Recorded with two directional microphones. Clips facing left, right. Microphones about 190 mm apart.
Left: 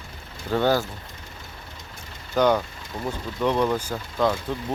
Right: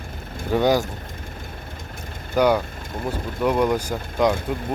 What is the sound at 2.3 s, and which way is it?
Speech, 10° right (ahead or behind).